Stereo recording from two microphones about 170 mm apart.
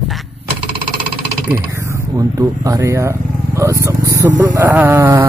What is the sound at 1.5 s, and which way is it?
Speech, 15° right (ahead or behind).